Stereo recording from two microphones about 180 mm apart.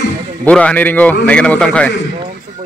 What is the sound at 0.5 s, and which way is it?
A man's voice, 5° left (ahead or behind).